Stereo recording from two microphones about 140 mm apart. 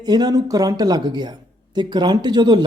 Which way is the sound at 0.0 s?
30° right (ahead or behind).